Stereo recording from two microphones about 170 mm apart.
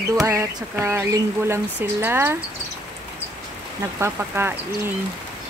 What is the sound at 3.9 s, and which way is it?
Speech, 15° right (ahead or behind).